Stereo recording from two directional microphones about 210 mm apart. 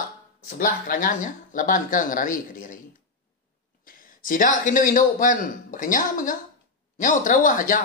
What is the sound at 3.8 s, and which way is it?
Speech, 40° left (ahead or behind).